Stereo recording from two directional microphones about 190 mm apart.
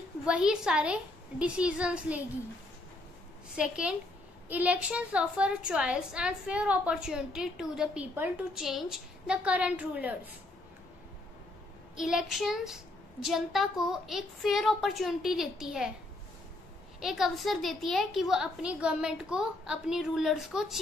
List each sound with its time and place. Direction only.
0.2 s a woman's voice: 5° right (ahead or behind)
3.5 s a woman's voice: 5° right (ahead or behind)
12.0 s a woman's voice: centre (ahead or behind)
17.0 s a woman's voice: centre (ahead or behind)